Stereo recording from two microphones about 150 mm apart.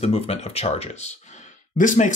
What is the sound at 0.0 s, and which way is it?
Speech, 45° left (ahead or behind).